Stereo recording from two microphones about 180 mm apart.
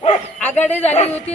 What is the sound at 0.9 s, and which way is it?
Speech, 35° left (ahead or behind).